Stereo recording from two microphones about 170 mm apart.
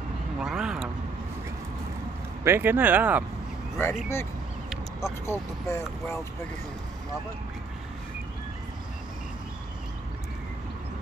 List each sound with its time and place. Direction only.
0.4 s speech: 5° right (ahead or behind)
2.4 s speech: 10° right (ahead or behind)
3.7 s speech: 15° left (ahead or behind)